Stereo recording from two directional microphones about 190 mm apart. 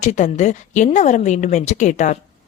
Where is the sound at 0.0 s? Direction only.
40° left (ahead or behind).